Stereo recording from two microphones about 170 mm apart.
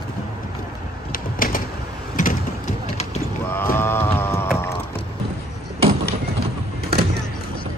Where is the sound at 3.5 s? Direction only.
15° left (ahead or behind).